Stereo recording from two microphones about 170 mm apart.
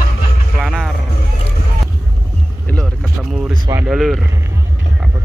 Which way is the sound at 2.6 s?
5° left (ahead or behind).